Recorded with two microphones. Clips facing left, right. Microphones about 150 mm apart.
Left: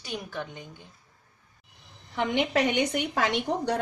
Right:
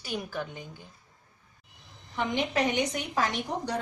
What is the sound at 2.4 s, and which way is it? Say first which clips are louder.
A woman's voice: left 3 dB; 65° left (ahead or behind).